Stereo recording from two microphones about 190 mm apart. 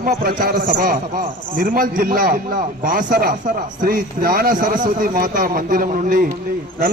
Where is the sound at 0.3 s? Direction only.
45° right (ahead or behind).